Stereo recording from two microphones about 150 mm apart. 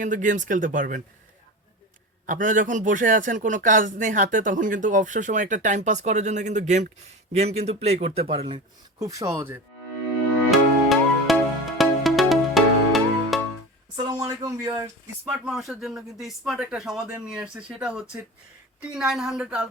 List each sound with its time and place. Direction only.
0.0 s speech: 55° right (ahead or behind)
2.2 s a man's voice: 60° right (ahead or behind); by 8.6 s 40° right (ahead or behind)
9.0 s speech: 20° right (ahead or behind)
10.5 s music: centre (ahead or behind)
13.9 s speech: 20° right (ahead or behind)
15.3 s speech: centre (ahead or behind)